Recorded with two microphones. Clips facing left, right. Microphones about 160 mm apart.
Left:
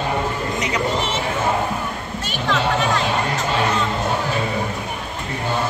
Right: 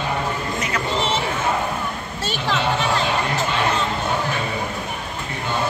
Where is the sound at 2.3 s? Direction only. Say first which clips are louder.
Left 1 dB; 35° right (ahead or behind).